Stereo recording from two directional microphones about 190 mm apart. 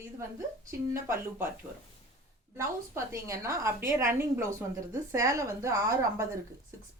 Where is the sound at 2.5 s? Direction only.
15° right (ahead or behind).